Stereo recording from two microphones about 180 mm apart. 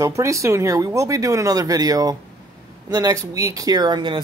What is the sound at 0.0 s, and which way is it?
Speech, 15° right (ahead or behind).